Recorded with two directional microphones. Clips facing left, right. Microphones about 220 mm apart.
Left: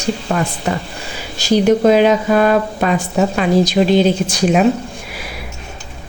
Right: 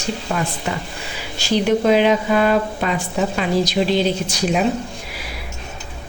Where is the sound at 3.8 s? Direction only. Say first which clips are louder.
Left 4 dB; 60° left (ahead or behind).